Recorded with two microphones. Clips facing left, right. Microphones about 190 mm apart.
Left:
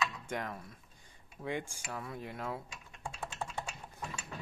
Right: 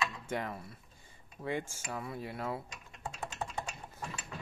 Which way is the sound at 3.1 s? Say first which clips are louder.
Right 1 dB; 15° right (ahead or behind).